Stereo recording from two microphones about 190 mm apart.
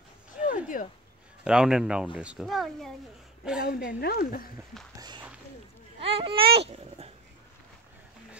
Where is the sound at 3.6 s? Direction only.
50° left (ahead or behind).